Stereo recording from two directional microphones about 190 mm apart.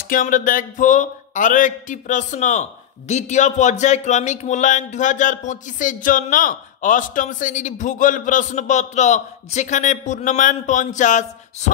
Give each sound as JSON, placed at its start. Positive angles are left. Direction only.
{"t": 0.0, "sound": "speech", "side_deg": 45}